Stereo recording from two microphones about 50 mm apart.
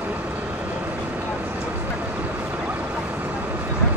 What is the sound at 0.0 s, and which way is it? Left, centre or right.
Vehicle, right.